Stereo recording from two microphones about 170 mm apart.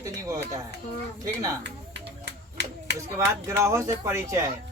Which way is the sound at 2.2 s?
90° right.